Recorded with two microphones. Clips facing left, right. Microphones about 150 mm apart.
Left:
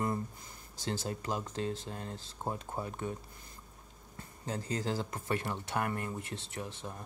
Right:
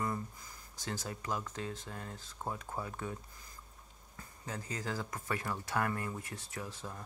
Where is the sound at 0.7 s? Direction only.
30° left (ahead or behind).